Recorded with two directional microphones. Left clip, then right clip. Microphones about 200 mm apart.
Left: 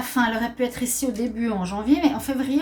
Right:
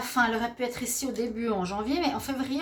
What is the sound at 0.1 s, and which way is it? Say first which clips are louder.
A woman's voice: left 2 dB; 40° right (ahead or behind).